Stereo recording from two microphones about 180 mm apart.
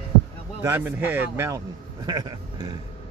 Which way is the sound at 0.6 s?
10° right (ahead or behind).